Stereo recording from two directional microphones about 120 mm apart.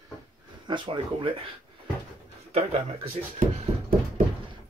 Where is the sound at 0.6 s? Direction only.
40° right (ahead or behind).